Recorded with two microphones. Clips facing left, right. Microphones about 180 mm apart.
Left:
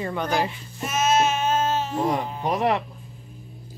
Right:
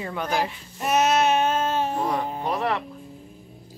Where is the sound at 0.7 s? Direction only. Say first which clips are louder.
Right 1 dB; 65° right (ahead or behind).